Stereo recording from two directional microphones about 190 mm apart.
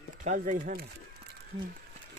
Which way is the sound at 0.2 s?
40° right (ahead or behind).